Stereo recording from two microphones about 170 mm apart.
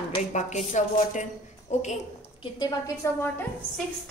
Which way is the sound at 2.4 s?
20° left (ahead or behind).